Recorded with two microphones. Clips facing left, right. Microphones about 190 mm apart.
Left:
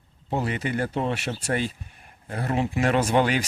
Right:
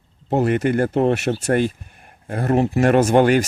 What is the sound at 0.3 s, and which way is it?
Speech, 50° right (ahead or behind).